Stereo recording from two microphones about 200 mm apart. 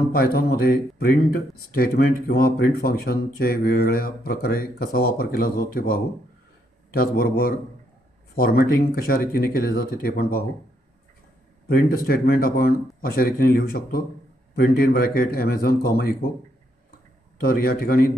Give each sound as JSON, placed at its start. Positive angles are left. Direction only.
{"t": 0.1, "sound": "speech", "side_deg": 50}
{"t": 11.6, "sound": "speech", "side_deg": 50}
{"t": 17.4, "sound": "speech", "side_deg": 45}